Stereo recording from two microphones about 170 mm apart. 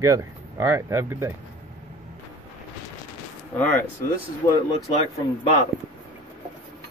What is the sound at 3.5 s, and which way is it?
Speech, 10° left (ahead or behind).